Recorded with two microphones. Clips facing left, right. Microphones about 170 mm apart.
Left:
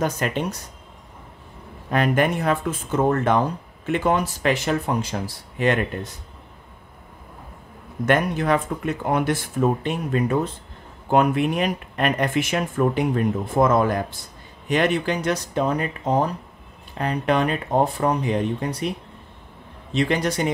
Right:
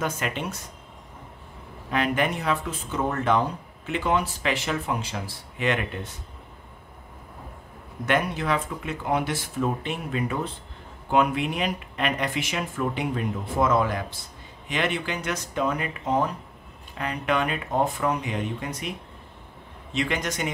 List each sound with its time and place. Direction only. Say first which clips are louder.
0.0 s speech: left 5 dB; 40° left (ahead or behind)
1.9 s speech: left 4 dB; 45° left (ahead or behind)
8.1 s speech: left 5 dB; 50° left (ahead or behind)